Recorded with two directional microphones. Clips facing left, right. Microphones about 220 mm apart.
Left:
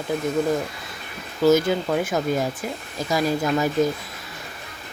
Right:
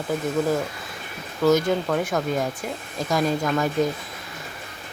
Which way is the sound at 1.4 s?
5° left (ahead or behind).